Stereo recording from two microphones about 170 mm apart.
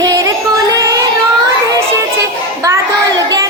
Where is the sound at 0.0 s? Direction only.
20° right (ahead or behind).